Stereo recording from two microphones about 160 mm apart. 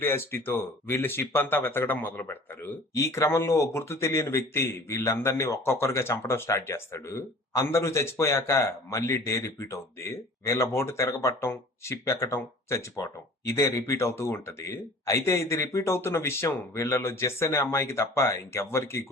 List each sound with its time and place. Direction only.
0.0 s speech: 15° left (ahead or behind)